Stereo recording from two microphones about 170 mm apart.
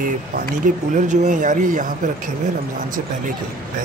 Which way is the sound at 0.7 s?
50° right (ahead or behind).